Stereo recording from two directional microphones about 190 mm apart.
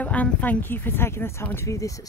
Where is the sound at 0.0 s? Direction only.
10° left (ahead or behind).